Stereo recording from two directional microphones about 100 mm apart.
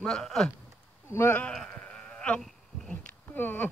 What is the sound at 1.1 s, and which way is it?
Speech, 20° left (ahead or behind).